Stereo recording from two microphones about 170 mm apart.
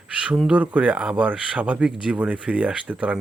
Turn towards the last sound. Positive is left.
turn(degrees=-10)  # may be behind; listen again after turning